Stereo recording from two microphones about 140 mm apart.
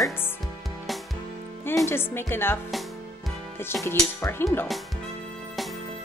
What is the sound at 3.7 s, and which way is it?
Speech, 20° left (ahead or behind).